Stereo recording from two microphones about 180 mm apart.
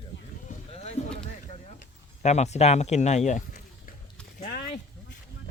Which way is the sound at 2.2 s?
40° left (ahead or behind).